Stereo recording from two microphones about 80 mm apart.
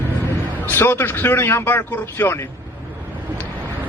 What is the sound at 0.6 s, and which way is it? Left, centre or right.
A man's voice, left.